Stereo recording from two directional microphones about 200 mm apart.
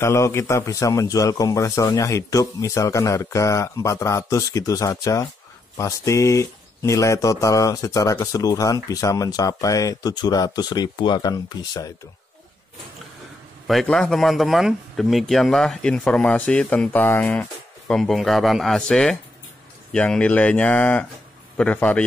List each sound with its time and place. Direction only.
0.0 s speech: 15° left (ahead or behind)
13.7 s a man's voice: centre (ahead or behind)